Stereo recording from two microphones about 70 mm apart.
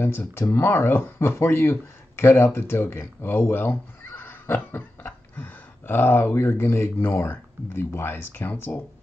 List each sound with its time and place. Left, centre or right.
0.0 s speech: left